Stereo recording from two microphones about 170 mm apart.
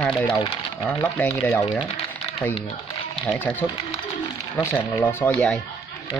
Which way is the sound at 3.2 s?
5° left (ahead or behind).